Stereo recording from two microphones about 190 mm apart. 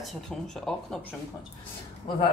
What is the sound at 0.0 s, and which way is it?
Speech, centre (ahead or behind).